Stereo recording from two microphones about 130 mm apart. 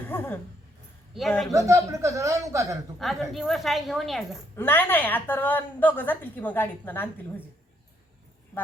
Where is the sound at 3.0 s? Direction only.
Centre (ahead or behind).